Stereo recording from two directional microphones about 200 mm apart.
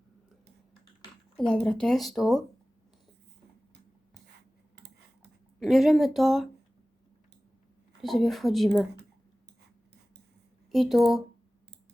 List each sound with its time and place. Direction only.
1.4 s speech: 5° left (ahead or behind)
4.8 s a sound: 55° right (ahead or behind)
5.5 s speech: centre (ahead or behind)
8.0 s speech: centre (ahead or behind)
10.7 s speech: centre (ahead or behind)